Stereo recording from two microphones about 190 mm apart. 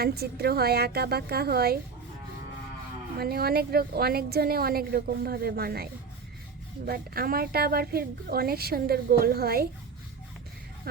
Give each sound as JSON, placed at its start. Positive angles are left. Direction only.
{"t": 0.0, "sound": "a woman's voice", "side_deg": -55}
{"t": 3.2, "sound": "a woman's voice", "side_deg": -55}